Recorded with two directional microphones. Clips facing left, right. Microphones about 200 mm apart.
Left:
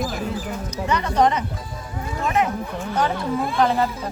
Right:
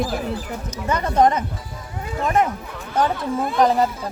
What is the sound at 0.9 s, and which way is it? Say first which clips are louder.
Speech: right 2 dB; 50° right (ahead or behind).